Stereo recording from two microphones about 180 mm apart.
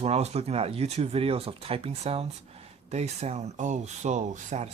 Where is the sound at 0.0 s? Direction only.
35° right (ahead or behind).